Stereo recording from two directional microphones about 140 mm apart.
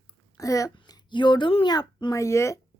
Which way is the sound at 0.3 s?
25° left (ahead or behind).